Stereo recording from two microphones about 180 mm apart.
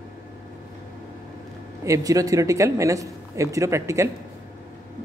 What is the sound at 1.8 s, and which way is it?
Speech, 20° right (ahead or behind).